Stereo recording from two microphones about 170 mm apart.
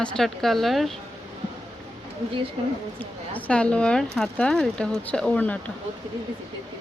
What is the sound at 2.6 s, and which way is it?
Speech, 30° right (ahead or behind).